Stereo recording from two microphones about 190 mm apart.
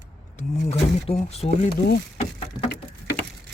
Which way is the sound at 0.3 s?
35° left (ahead or behind).